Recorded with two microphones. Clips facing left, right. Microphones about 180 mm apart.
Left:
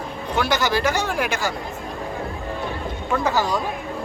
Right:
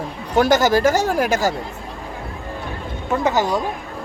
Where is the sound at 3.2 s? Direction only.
20° right (ahead or behind).